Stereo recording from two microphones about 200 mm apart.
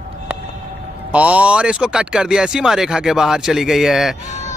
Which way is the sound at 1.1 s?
5° right (ahead or behind).